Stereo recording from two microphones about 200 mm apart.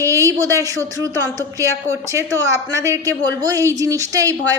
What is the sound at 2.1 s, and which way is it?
A woman's voice, 15° right (ahead or behind).